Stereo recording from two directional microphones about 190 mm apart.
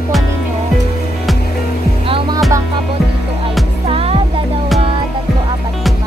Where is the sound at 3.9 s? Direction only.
30° right (ahead or behind).